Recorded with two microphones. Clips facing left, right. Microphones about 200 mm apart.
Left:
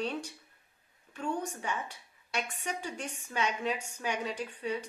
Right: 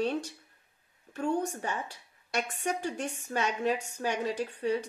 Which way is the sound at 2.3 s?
40° right (ahead or behind).